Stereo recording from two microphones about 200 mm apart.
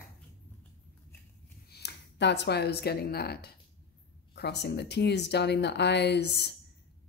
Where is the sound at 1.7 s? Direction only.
55° left (ahead or behind).